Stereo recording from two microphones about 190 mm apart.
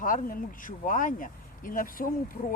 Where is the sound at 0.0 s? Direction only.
45° left (ahead or behind).